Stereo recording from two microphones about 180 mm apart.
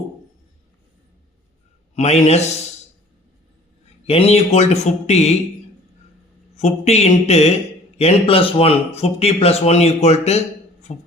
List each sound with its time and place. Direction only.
2.0 s speech: 35° left (ahead or behind)
4.0 s speech: 35° left (ahead or behind)
6.6 s speech: 40° left (ahead or behind)